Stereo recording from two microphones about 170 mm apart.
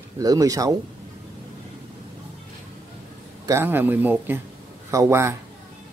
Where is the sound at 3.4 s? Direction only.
15° right (ahead or behind).